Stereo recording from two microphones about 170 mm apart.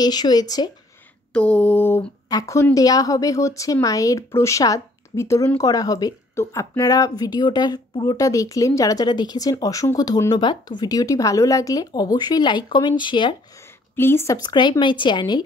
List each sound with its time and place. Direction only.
0.0 s speech: 25° left (ahead or behind)
1.3 s mantra: 5° left (ahead or behind)
2.2 s speech: 20° left (ahead or behind)
13.9 s speech: 15° left (ahead or behind)